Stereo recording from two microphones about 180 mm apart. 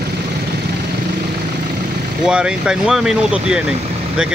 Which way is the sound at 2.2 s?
5° right (ahead or behind).